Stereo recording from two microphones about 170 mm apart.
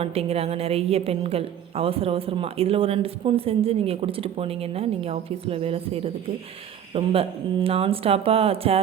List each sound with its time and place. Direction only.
0.0 s a woman's voice: 35° right (ahead or behind)